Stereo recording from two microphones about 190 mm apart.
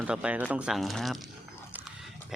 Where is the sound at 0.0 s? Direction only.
5° right (ahead or behind).